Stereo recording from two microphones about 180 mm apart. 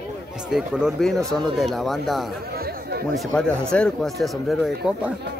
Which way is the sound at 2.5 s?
55° right (ahead or behind).